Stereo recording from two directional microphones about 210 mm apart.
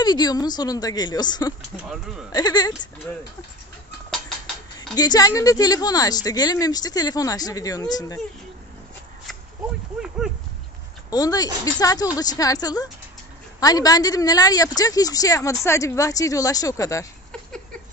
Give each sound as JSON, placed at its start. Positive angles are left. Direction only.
{"t": 0.0, "sound": "a woman's voice", "side_deg": 20}
{"t": 4.9, "sound": "a woman's voice", "side_deg": 20}
{"t": 10.2, "sound": "a sound", "side_deg": -5}
{"t": 11.1, "sound": "a woman's voice", "side_deg": 15}